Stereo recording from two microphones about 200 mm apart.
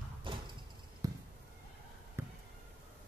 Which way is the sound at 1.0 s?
15° right (ahead or behind).